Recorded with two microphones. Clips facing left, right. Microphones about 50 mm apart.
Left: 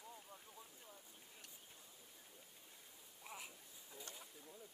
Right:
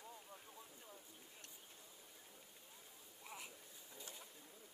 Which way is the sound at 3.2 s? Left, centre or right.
Centre.